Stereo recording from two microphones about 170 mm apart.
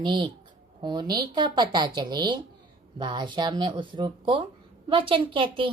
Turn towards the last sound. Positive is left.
turn(degrees=-30)  # may be behind; listen again after turning